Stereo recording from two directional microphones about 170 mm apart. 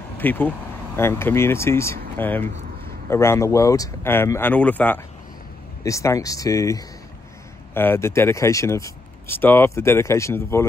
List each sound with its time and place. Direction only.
0.2 s speech: 10° left (ahead or behind)